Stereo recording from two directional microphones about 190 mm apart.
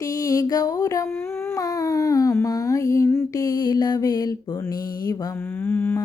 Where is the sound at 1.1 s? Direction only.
15° left (ahead or behind).